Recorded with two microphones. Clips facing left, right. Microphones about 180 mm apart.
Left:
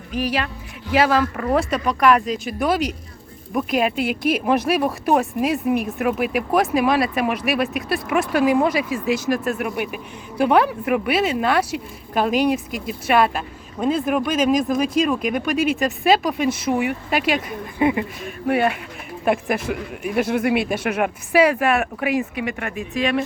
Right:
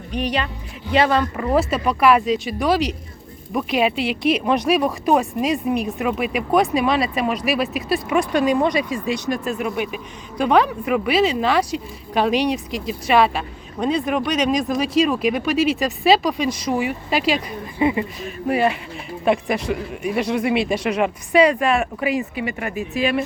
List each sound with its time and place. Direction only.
0.1 s speech: centre (ahead or behind)
16.8 s speech: 55° left (ahead or behind)
17.3 s speech: centre (ahead or behind)